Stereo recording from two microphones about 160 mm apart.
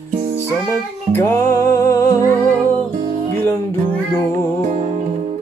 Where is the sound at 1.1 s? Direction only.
15° left (ahead or behind).